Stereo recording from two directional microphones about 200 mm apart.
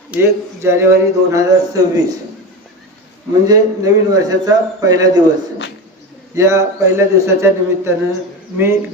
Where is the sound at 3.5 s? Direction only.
20° right (ahead or behind).